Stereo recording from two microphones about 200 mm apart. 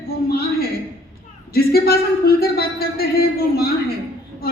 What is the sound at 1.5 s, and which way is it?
Speech, 50° left (ahead or behind).